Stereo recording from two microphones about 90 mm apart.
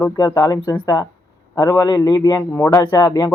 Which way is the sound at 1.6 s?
40° left (ahead or behind).